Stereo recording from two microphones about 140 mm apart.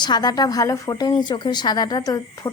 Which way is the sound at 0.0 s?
30° left (ahead or behind).